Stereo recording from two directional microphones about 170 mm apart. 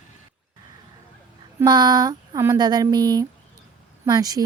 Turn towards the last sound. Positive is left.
turn(degrees=-20)  # may be behind; listen again after turning